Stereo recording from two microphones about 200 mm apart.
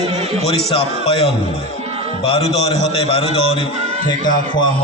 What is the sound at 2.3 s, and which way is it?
Speech, 30° left (ahead or behind).